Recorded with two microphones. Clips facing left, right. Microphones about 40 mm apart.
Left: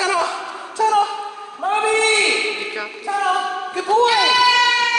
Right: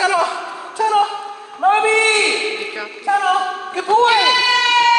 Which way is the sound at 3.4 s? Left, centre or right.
Centre.